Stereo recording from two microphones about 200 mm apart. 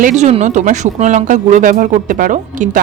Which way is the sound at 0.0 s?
35° right (ahead or behind).